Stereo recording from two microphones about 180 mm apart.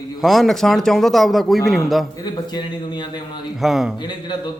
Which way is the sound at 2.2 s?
25° left (ahead or behind).